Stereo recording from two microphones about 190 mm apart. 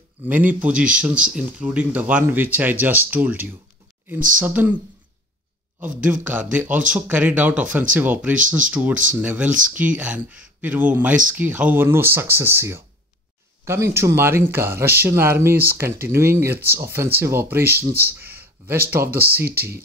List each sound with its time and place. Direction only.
0.2 s speech: 10° right (ahead or behind)
5.8 s speech: 5° right (ahead or behind)
18.2 s a sound: 10° right (ahead or behind)
19.3 s speech: 10° right (ahead or behind)